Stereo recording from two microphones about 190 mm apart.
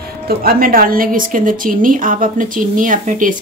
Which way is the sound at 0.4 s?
50° right (ahead or behind).